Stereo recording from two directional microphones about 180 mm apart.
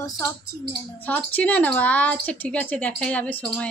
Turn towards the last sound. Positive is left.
turn(degrees=5)  # may be behind; listen again after turning